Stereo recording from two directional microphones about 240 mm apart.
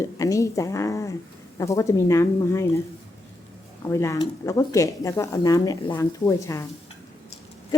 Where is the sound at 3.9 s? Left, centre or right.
Centre.